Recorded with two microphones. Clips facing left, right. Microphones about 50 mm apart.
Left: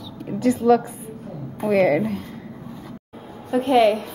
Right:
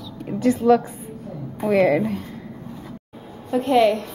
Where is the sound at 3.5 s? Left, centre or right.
Centre.